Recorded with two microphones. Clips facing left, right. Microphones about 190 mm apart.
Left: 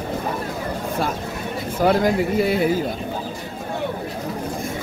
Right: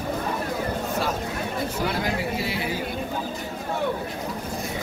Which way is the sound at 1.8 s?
50° left (ahead or behind).